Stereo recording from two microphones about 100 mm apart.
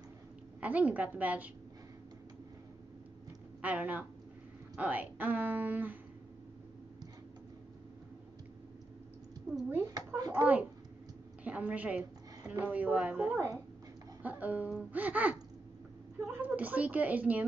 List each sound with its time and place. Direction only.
0.6 s a woman's voice: 15° right (ahead or behind)
3.6 s a woman's voice: 15° right (ahead or behind)
9.9 s a child's voice: 40° right (ahead or behind)
10.3 s a woman's voice: 15° right (ahead or behind)